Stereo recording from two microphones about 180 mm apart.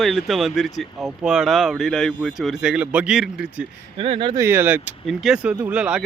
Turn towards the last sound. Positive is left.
turn(degrees=-5)  # may be behind; listen again after turning